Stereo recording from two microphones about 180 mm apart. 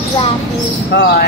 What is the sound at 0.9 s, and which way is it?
Speech, 65° left (ahead or behind).